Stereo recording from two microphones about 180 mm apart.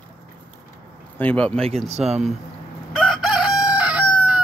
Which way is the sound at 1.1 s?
5° left (ahead or behind).